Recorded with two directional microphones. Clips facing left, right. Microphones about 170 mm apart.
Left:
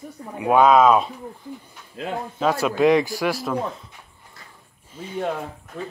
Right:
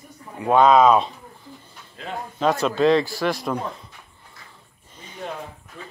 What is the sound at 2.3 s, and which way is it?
Speech, 5° left (ahead or behind).